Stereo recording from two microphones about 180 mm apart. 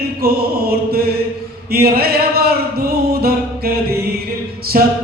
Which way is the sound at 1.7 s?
60° right (ahead or behind).